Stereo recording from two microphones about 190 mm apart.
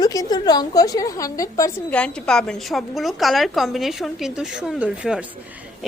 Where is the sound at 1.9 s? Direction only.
5° left (ahead or behind).